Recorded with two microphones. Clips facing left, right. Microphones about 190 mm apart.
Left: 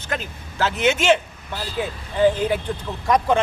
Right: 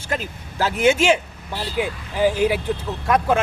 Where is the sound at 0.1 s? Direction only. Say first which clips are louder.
Right 2 dB; 10° right (ahead or behind).